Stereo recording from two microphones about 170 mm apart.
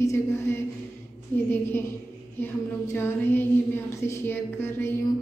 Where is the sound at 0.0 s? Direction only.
15° left (ahead or behind).